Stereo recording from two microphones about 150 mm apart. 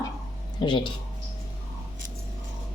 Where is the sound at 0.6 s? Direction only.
30° left (ahead or behind).